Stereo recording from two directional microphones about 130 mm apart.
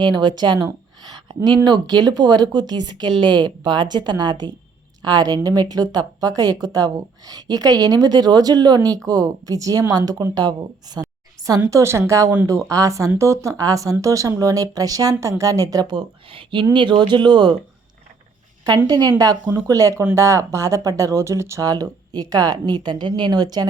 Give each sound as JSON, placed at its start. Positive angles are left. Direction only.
{"t": 0.0, "sound": "a woman's voice", "side_deg": -35}
{"t": 11.4, "sound": "a sound", "side_deg": -25}
{"t": 11.7, "sound": "a woman's voice", "side_deg": -20}
{"t": 18.9, "sound": "a woman's voice", "side_deg": -30}